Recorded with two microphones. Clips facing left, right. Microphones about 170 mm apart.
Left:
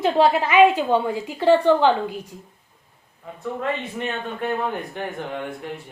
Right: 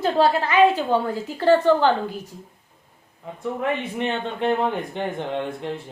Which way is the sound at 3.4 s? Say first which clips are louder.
Right 1 dB; 20° right (ahead or behind).